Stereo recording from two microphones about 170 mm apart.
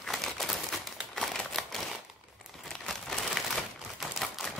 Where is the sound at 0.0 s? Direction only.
Centre (ahead or behind).